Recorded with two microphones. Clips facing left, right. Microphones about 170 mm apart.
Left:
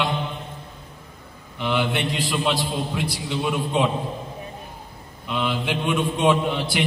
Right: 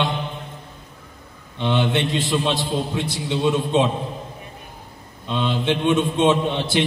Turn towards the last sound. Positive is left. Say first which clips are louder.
# right 1 dB
turn(degrees=-25)  # may be behind; listen again after turning